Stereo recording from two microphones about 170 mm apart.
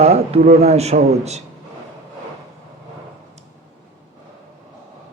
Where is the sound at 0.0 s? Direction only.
40° right (ahead or behind).